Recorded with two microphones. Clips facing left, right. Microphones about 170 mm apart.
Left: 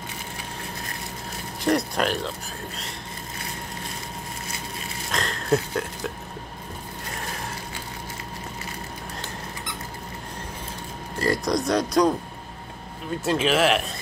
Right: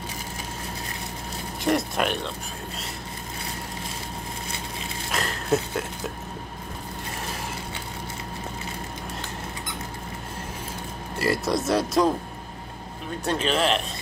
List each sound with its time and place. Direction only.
1.6 s speech: centre (ahead or behind)
5.1 s a sound: 10° right (ahead or behind)
11.1 s speech: 5° right (ahead or behind)
13.2 s speech: 5° left (ahead or behind)